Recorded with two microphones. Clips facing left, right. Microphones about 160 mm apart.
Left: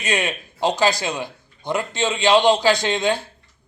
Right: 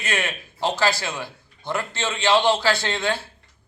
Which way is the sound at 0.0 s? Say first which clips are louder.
Left 4 dB; 20° left (ahead or behind).